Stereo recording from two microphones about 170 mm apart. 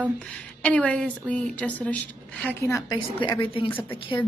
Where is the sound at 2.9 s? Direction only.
25° left (ahead or behind).